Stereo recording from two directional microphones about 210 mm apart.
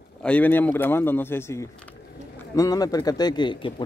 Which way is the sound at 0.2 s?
5° left (ahead or behind).